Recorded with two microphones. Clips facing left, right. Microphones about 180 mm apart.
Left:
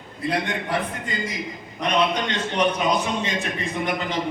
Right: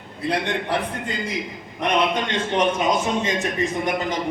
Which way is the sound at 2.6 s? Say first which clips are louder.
Right 1 dB; 45° right (ahead or behind).